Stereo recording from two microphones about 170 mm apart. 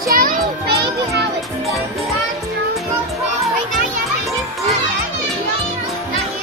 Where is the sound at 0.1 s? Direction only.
55° right (ahead or behind).